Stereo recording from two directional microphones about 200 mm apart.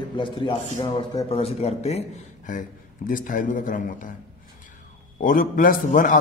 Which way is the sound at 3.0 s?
45° left (ahead or behind).